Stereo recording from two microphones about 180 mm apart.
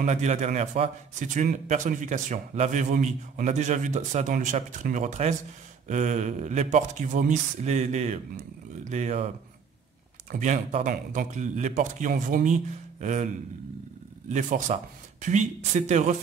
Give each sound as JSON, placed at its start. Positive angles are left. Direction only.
{"t": 0.0, "sound": "a man's voice", "side_deg": -40}
{"t": 10.3, "sound": "a man's voice", "side_deg": -40}
{"t": 14.3, "sound": "speech", "side_deg": -40}